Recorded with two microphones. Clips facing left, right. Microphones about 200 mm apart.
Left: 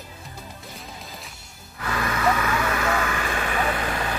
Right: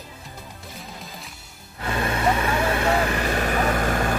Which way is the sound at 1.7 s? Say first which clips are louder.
Right 2 dB; 30° right (ahead or behind).